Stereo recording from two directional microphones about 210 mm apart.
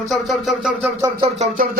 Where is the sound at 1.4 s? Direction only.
40° right (ahead or behind).